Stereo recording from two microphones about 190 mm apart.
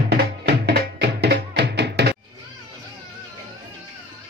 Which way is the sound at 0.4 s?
60° right (ahead or behind).